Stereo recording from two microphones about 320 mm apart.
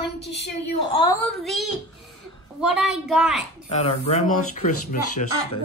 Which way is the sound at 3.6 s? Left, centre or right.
Centre.